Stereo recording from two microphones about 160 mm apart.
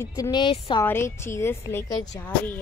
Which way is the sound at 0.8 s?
15° left (ahead or behind).